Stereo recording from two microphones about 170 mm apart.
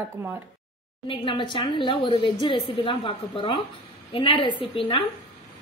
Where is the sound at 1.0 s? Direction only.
30° left (ahead or behind).